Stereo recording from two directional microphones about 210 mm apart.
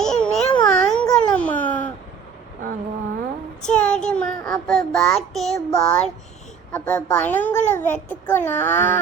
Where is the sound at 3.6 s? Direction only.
5° left (ahead or behind).